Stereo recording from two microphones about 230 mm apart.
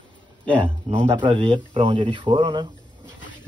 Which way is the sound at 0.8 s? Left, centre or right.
Right.